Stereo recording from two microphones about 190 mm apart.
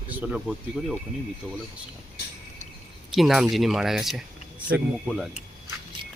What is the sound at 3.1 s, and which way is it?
Speech, centre (ahead or behind).